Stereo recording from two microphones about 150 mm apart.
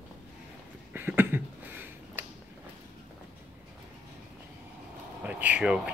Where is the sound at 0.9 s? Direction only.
15° right (ahead or behind).